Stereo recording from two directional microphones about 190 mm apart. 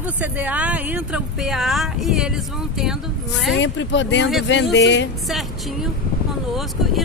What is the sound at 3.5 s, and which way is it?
Speech, 70° left (ahead or behind).